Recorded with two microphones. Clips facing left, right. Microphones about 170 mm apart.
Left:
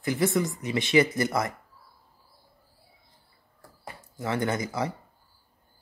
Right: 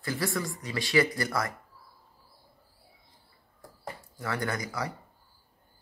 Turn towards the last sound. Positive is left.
turn(degrees=25)  # may be behind; listen again after turning